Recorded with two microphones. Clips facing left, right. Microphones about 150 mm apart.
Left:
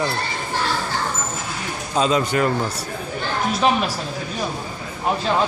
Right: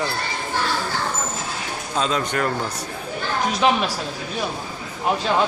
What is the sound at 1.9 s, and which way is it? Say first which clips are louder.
Speech: left 4 dB; 5° left (ahead or behind).